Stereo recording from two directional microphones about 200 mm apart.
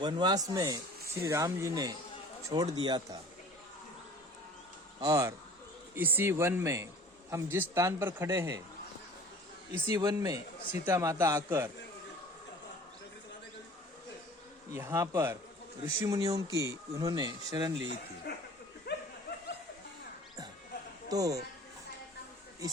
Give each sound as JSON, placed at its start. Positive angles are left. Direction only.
{"t": 0.0, "sound": "a man's voice", "side_deg": -20}
{"t": 4.9, "sound": "a man's voice", "side_deg": -15}
{"t": 9.9, "sound": "a man's voice", "side_deg": -15}
{"t": 14.7, "sound": "a man's voice", "side_deg": -15}
{"t": 18.9, "sound": "dog", "side_deg": 55}
{"t": 21.1, "sound": "a man's voice", "side_deg": -15}